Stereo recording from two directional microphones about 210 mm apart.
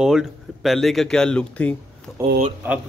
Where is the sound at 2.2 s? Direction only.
15° right (ahead or behind).